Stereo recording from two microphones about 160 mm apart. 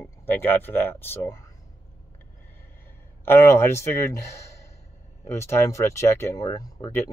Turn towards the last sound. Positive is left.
turn(degrees=25)  # may be behind; listen again after turning